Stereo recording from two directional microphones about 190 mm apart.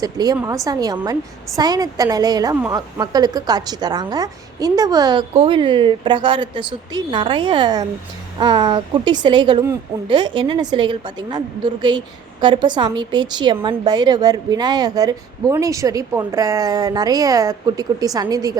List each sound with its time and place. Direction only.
0.0 s a woman's voice: 20° right (ahead or behind)